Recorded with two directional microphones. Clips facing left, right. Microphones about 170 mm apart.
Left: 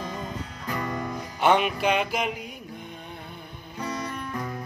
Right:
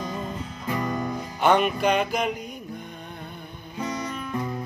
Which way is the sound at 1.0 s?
Centre (ahead or behind).